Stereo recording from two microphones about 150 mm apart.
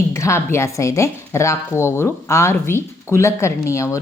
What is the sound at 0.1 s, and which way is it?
A woman's voice, 20° left (ahead or behind).